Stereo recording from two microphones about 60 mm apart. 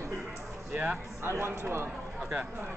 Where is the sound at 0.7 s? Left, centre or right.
Right.